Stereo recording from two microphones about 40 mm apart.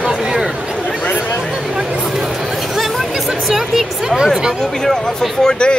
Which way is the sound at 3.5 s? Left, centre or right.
Centre.